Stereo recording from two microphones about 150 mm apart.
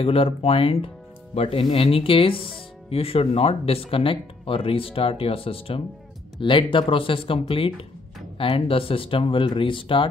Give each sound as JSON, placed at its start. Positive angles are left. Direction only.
{"t": 0.0, "sound": "speech", "side_deg": 40}